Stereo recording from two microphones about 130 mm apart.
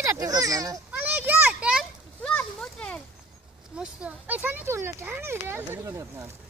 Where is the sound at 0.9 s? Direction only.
15° right (ahead or behind).